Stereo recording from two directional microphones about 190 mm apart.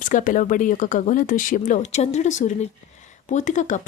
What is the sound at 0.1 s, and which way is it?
Speech, 45° left (ahead or behind).